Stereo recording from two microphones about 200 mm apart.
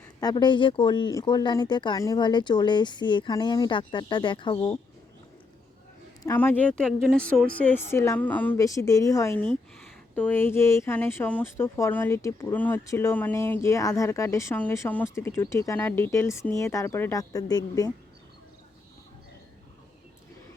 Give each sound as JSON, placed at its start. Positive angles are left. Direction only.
{"t": 0.2, "sound": "speech", "side_deg": 20}
{"t": 6.2, "sound": "speech", "side_deg": 10}